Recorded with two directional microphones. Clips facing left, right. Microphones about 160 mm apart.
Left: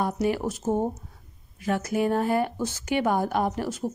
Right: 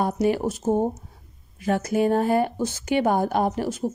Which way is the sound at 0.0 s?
25° right (ahead or behind).